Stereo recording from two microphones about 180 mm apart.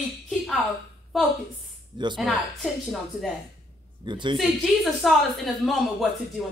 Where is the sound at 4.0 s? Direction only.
25° right (ahead or behind).